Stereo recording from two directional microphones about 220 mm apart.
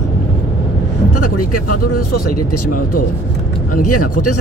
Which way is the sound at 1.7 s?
40° left (ahead or behind).